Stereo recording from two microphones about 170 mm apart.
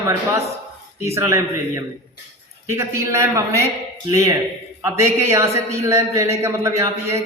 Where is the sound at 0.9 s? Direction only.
15° right (ahead or behind).